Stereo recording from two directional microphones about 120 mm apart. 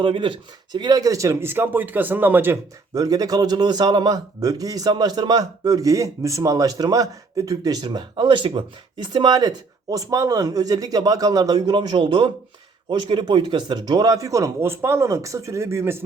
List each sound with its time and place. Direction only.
0.0 s speech: 45° right (ahead or behind); by 2.6 s 15° right (ahead or behind)
2.9 s a man's voice: 30° right (ahead or behind)